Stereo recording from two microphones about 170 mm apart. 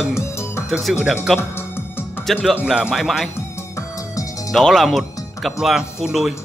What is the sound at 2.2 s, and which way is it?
Speech, centre (ahead or behind).